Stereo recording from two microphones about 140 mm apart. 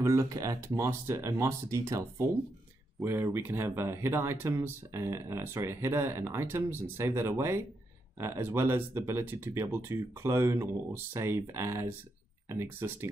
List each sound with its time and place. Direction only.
0.0 s speech: 20° right (ahead or behind)